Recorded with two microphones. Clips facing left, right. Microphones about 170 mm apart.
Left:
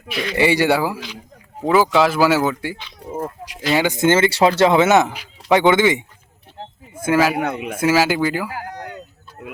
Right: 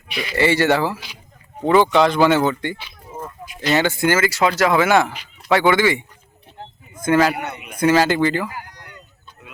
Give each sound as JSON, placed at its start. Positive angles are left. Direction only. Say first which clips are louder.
{"t": 0.1, "sound": "speech", "louder": "left 3 dB", "side_deg": 0}
{"t": 0.3, "sound": "speech", "louder": "even", "side_deg": 15}
{"t": 3.0, "sound": "a sound", "louder": "left 8 dB", "side_deg": 70}
{"t": 3.8, "sound": "speech", "louder": "left 3 dB", "side_deg": 15}
{"t": 7.0, "sound": "speech", "louder": "even", "side_deg": 5}
{"t": 7.5, "sound": "a man's voice", "louder": "left 10 dB", "side_deg": 90}
{"t": 7.8, "sound": "speech", "louder": "right 2 dB", "side_deg": 5}
{"t": 8.5, "sound": "a sound", "louder": "left 7 dB", "side_deg": 90}